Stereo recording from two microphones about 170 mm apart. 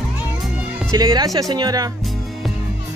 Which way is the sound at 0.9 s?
25° right (ahead or behind).